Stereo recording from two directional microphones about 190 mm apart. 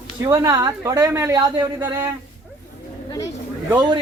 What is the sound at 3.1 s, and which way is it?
Speech, 15° left (ahead or behind).